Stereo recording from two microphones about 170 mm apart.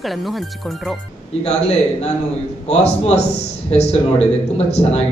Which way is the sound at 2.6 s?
40° left (ahead or behind).